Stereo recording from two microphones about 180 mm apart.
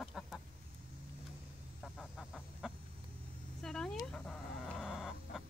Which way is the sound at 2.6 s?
5° right (ahead or behind).